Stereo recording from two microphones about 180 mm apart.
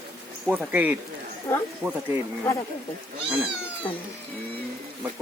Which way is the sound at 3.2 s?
5° right (ahead or behind).